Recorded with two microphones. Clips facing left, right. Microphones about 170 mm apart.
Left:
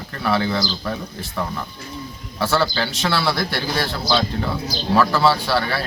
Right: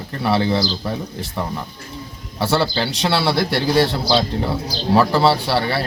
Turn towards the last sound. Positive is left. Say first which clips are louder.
# right 2 dB
turn(degrees=-30)  # may be behind; listen again after turning